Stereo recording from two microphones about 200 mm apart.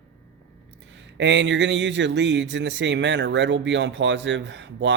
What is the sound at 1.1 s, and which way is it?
Speech, 60° right (ahead or behind).